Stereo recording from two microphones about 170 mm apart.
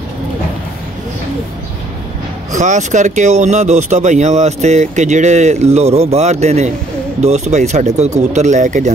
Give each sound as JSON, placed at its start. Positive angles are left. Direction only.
{"t": 2.5, "sound": "speech", "side_deg": -45}